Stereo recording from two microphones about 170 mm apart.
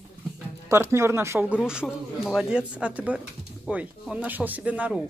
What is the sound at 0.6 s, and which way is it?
Speech, 15° right (ahead or behind).